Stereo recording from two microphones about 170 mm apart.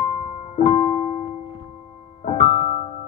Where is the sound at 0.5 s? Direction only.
40° left (ahead or behind).